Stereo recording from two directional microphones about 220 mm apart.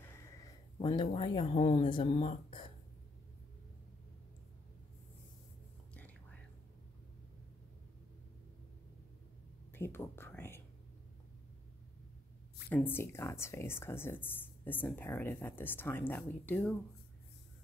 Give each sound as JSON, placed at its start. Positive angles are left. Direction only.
{"t": 0.0, "sound": "speech", "side_deg": 15}
{"t": 5.9, "sound": "whispering", "side_deg": 5}
{"t": 9.7, "sound": "speech", "side_deg": 10}
{"t": 12.6, "sound": "speech", "side_deg": 10}